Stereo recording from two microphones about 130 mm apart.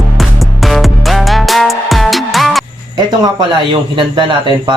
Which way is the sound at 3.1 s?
35° right (ahead or behind).